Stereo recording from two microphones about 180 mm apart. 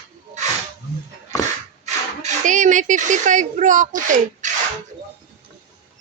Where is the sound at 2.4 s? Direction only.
45° right (ahead or behind).